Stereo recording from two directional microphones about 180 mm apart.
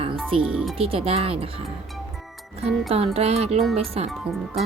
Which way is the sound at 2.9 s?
35° right (ahead or behind).